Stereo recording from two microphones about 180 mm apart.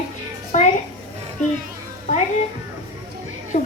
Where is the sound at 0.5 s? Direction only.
40° left (ahead or behind).